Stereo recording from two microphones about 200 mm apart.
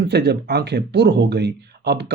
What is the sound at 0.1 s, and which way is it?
Speech, 55° right (ahead or behind).